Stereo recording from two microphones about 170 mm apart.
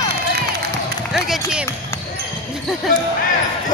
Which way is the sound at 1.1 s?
Centre (ahead or behind).